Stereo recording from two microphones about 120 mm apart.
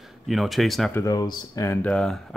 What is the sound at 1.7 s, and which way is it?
Speech, 10° left (ahead or behind).